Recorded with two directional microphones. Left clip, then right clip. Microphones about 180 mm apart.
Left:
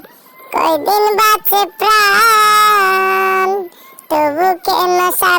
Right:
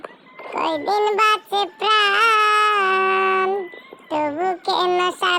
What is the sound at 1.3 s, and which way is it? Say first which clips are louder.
Child singing: left 7 dB; 80° left.